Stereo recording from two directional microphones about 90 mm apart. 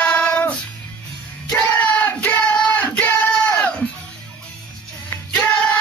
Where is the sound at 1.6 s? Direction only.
20° left (ahead or behind).